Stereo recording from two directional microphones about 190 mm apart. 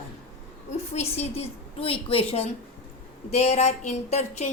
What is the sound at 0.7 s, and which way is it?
A woman's voice, 35° left (ahead or behind).